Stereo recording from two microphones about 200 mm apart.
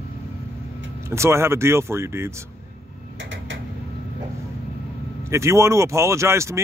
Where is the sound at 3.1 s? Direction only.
70° right (ahead or behind).